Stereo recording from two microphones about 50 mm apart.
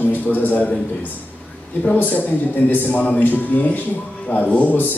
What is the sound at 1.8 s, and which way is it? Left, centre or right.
Speech, left.